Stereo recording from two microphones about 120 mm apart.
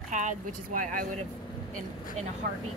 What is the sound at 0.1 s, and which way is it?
Speech, 90° right.